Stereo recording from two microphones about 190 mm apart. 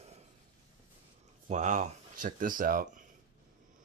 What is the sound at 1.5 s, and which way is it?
Speech, 40° right (ahead or behind).